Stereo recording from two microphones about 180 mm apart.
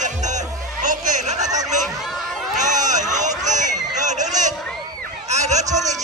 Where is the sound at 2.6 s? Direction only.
40° right (ahead or behind).